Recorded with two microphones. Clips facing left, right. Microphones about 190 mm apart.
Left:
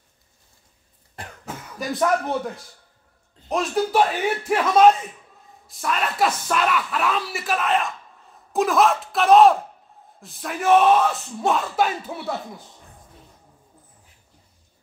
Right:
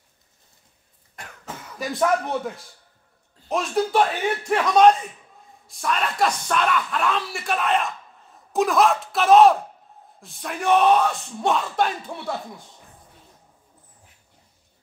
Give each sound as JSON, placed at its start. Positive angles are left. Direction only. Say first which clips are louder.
{"t": 1.2, "sound": "cough", "louder": "left 4 dB", "side_deg": 30}
{"t": 1.8, "sound": "speech", "louder": "even", "side_deg": 0}